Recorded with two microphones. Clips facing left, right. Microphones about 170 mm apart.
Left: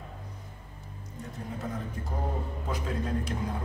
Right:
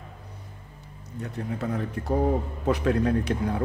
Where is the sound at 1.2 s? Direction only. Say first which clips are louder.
Right 6 dB; 70° right (ahead or behind).